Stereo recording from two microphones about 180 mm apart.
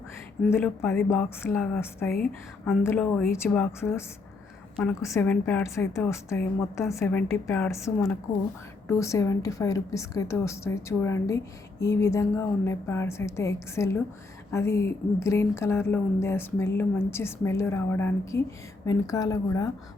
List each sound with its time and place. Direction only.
0.5 s a woman's voice: 15° left (ahead or behind)
1.5 s speech: centre (ahead or behind)
1.8 s a woman's voice: 15° left (ahead or behind)